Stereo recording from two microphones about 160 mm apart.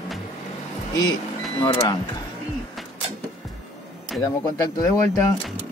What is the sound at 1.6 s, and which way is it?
Speech, 30° left (ahead or behind).